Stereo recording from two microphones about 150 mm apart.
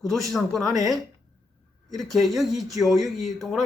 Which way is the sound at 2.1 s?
Centre (ahead or behind).